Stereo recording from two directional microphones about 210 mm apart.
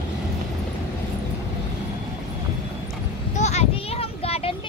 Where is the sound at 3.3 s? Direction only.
30° left (ahead or behind).